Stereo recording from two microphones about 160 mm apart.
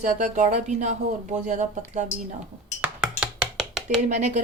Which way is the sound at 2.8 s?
5° right (ahead or behind).